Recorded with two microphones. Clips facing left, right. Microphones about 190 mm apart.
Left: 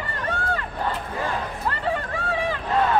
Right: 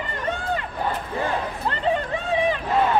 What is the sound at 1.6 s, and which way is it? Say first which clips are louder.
Chatter: right 3 dB; 20° right (ahead or behind).